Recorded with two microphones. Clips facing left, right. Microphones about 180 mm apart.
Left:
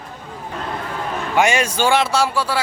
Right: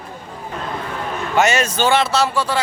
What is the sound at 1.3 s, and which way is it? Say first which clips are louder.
Speech: right 1 dB; 10° left (ahead or behind).